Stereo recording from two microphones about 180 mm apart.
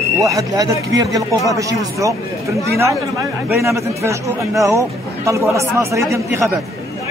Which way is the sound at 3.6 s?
15° right (ahead or behind).